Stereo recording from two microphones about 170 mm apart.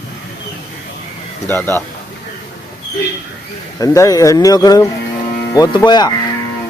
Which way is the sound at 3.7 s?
20° left (ahead or behind).